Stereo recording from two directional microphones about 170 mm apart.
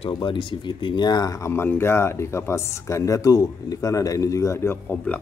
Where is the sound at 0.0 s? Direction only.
30° left (ahead or behind).